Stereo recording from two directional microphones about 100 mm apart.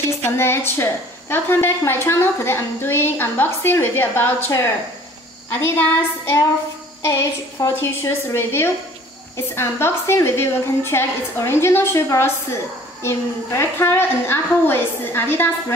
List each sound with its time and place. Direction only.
0.2 s a woman's voice: 25° left (ahead or behind)